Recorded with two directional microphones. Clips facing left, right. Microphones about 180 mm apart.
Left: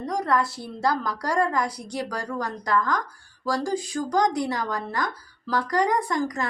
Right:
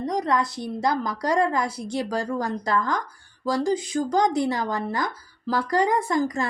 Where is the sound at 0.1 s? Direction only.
20° right (ahead or behind).